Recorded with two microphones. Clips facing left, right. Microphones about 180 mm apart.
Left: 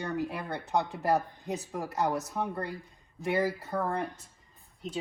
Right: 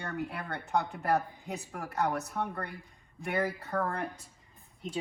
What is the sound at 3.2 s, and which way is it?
Speech, 10° left (ahead or behind).